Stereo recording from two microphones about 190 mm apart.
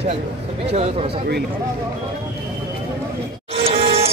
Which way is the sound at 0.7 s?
30° right (ahead or behind).